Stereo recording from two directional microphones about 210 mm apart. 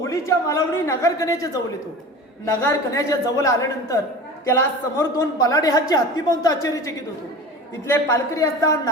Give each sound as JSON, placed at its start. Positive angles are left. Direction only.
{"t": 0.0, "sound": "a woman's voice", "side_deg": 15}